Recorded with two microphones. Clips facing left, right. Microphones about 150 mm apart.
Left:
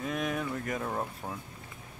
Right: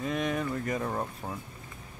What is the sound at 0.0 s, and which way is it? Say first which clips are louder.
Speech: right 2 dB; centre (ahead or behind).